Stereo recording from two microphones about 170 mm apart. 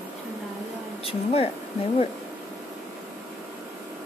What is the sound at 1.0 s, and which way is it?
Speech, 35° left (ahead or behind).